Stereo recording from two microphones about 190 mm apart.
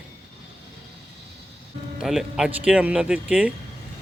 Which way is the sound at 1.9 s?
Centre (ahead or behind).